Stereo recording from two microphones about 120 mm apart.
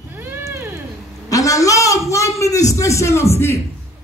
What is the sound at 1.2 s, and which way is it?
A man's voice, 30° left (ahead or behind).